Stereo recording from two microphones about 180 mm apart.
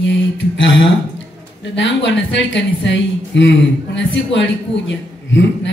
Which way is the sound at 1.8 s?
85° left.